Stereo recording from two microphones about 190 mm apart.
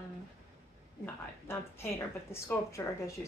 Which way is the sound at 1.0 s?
15° left (ahead or behind).